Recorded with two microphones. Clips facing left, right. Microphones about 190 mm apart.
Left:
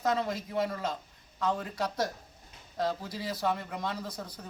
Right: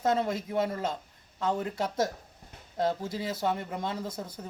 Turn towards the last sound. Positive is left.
turn(degrees=-25)  # may be behind; listen again after turning